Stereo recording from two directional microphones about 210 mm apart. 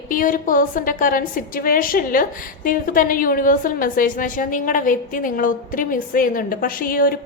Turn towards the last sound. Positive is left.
turn(degrees=45)  # may be behind; listen again after turning